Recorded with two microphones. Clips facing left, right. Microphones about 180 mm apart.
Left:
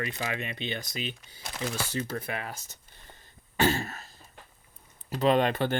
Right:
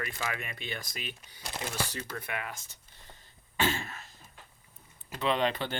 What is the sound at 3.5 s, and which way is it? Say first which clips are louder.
Throat clearing: left 5 dB; 40° left (ahead or behind).